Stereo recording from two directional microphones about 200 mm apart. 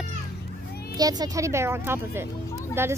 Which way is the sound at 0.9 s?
20° right (ahead or behind).